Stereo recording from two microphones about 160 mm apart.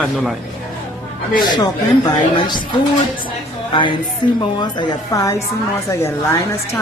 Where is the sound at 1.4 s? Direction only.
25° left (ahead or behind).